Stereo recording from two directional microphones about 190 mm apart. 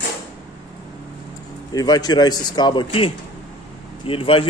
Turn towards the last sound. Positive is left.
turn(degrees=30)  # may be behind; listen again after turning